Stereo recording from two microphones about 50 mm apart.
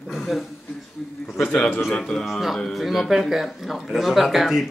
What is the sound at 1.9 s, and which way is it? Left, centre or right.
Speech, left.